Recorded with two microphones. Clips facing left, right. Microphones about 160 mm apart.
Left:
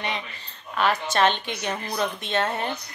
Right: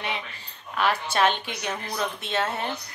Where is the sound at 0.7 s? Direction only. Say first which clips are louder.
Left 1 dB; 10° right (ahead or behind).